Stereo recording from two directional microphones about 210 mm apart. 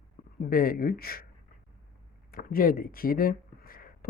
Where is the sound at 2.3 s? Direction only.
40° left (ahead or behind).